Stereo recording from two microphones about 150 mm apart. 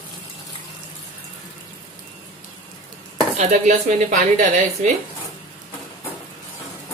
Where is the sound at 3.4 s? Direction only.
55° right (ahead or behind).